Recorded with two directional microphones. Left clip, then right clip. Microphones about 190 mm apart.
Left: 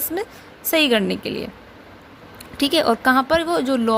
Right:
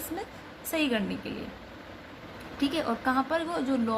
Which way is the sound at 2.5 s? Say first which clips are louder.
Left 12 dB; 55° left (ahead or behind).